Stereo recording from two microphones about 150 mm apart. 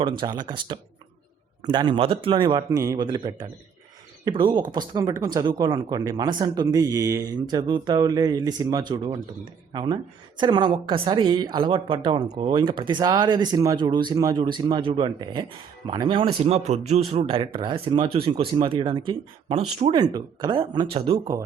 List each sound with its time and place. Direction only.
0.0 s a man's voice: 30° right (ahead or behind)
19.9 s speech: 30° right (ahead or behind)
20.9 s a man's voice: 40° right (ahead or behind)